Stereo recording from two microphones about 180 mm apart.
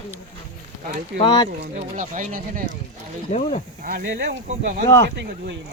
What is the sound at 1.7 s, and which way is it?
Speech, 45° right (ahead or behind).